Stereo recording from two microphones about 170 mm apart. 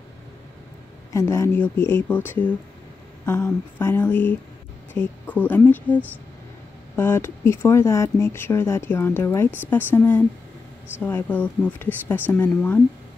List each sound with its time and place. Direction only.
1.1 s speech: 15° left (ahead or behind)
7.0 s speech: 15° left (ahead or behind)